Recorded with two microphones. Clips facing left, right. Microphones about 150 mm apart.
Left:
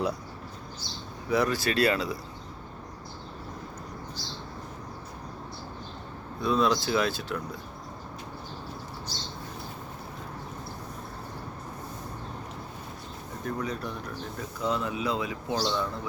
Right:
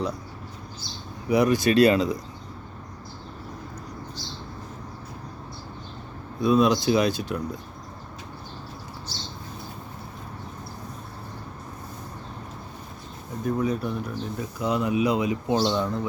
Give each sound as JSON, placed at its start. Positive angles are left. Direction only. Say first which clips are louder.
{"t": 1.3, "sound": "speech", "louder": "right 6 dB", "side_deg": -15}
{"t": 6.4, "sound": "speech", "louder": "right 5 dB", "side_deg": -15}
{"t": 13.4, "sound": "speech", "louder": "right 7 dB", "side_deg": -10}